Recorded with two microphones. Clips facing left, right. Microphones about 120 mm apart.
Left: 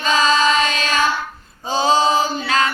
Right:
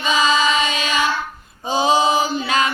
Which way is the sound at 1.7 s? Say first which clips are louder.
Even; 15° right (ahead or behind).